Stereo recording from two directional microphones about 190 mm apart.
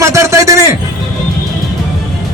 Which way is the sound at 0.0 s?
15° right (ahead or behind).